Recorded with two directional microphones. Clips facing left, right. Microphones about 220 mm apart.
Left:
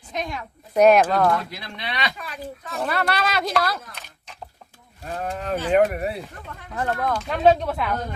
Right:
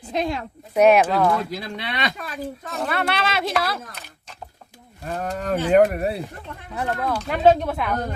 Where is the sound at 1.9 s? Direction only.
45° right (ahead or behind).